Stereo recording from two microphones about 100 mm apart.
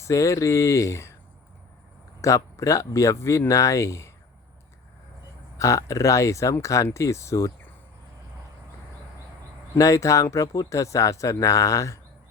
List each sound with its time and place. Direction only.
0.0 s speech: 30° left (ahead or behind)
2.2 s speech: 30° left (ahead or behind)
5.5 s speech: 30° left (ahead or behind)
9.7 s speech: 30° left (ahead or behind)